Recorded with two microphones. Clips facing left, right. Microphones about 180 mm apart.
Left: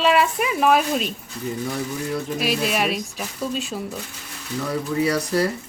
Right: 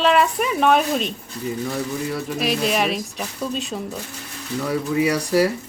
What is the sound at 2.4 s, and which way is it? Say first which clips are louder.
A woman's voice: right 3 dB; centre (ahead or behind).